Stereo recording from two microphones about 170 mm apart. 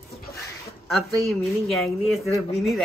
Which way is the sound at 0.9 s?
Centre (ahead or behind).